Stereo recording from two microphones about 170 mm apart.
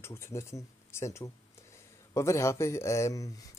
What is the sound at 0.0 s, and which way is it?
Speech, 15° left (ahead or behind).